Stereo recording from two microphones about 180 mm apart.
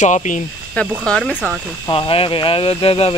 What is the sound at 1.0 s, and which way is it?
Speech, 5° left (ahead or behind).